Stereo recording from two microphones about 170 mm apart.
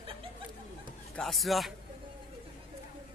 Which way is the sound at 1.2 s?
Centre (ahead or behind).